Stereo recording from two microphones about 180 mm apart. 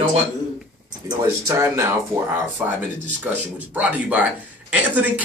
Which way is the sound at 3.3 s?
10° right (ahead or behind).